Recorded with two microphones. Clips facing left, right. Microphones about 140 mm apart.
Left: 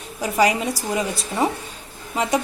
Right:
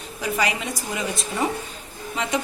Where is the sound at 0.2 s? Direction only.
40° left (ahead or behind).